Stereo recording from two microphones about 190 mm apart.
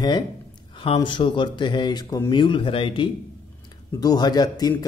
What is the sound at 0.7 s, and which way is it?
Speech, 25° left (ahead or behind).